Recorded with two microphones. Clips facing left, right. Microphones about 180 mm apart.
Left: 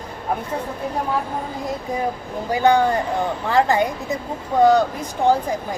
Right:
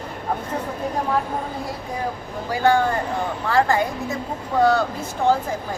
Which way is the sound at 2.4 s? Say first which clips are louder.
Left 2 dB; 20° left (ahead or behind).